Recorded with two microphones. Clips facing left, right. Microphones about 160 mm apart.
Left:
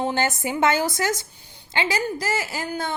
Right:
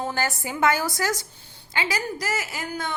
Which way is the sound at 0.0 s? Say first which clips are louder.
Left 4 dB; 20° left (ahead or behind).